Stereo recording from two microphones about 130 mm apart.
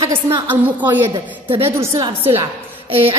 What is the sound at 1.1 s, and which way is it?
Speech, 40° right (ahead or behind).